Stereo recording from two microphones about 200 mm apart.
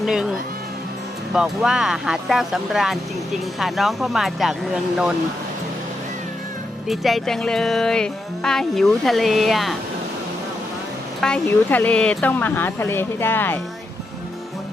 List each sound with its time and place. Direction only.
0.0 s speech: 5° right (ahead or behind)
6.8 s speech: centre (ahead or behind)
11.2 s speech: 5° left (ahead or behind)